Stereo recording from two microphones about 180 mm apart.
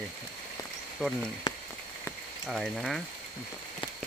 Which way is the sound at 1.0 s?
Centre (ahead or behind).